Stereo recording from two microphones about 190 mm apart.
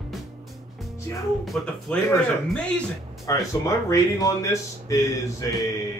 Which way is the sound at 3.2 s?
15° left (ahead or behind).